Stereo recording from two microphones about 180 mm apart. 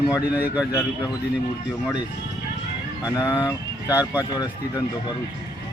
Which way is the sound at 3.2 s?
10° right (ahead or behind).